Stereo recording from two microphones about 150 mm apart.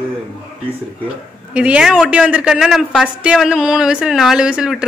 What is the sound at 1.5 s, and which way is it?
Speech, 10° right (ahead or behind).